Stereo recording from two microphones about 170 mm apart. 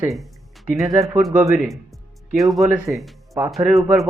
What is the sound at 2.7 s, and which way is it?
Speech, 15° right (ahead or behind).